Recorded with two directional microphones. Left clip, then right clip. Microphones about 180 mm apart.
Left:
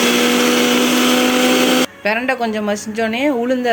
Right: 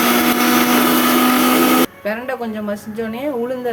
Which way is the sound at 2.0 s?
35° left (ahead or behind).